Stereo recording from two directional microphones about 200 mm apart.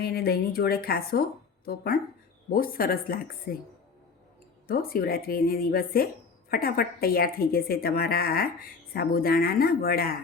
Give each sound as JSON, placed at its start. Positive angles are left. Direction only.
{"t": 0.0, "sound": "a woman's voice", "side_deg": 50}
{"t": 4.7, "sound": "a woman's voice", "side_deg": 45}